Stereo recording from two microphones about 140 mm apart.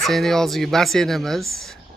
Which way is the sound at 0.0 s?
Centre (ahead or behind).